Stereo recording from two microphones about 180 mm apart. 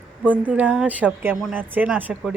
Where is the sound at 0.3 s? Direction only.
10° right (ahead or behind).